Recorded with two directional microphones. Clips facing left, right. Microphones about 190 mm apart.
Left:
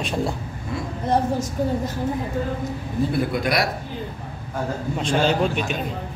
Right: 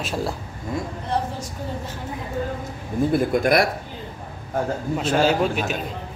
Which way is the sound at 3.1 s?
50° right (ahead or behind).